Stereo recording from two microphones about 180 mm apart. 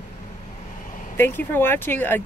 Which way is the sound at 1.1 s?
10° left (ahead or behind).